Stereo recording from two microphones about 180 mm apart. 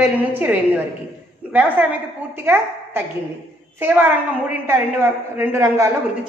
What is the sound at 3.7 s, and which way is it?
A woman's voice, 10° right (ahead or behind).